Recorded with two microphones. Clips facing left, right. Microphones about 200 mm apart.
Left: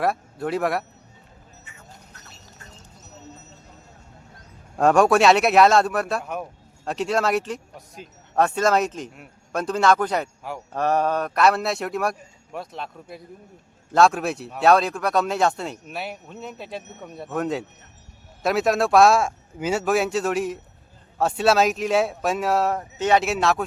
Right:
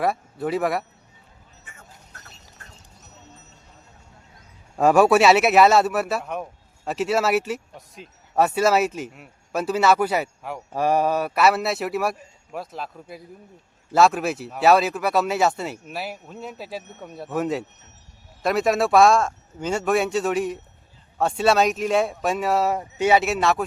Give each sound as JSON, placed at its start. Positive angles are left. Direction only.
{"t": 0.0, "sound": "speech", "side_deg": 0}
{"t": 1.7, "sound": "vehicle", "side_deg": -50}
{"t": 4.8, "sound": "speech", "side_deg": -5}